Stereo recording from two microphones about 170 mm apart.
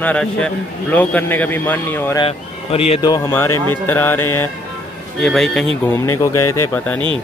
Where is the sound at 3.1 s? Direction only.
15° left (ahead or behind).